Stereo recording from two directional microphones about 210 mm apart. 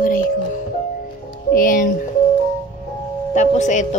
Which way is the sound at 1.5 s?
40° left (ahead or behind).